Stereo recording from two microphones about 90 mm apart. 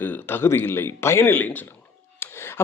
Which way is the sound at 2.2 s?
25° left (ahead or behind).